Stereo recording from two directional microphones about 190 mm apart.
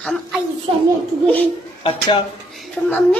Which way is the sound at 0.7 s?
30° right (ahead or behind).